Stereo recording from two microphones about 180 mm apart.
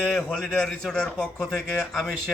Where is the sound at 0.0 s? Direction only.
5° left (ahead or behind).